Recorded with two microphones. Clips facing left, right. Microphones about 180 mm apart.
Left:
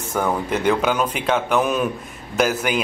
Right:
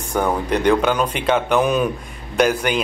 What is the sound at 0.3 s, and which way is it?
A man's voice, 5° left (ahead or behind).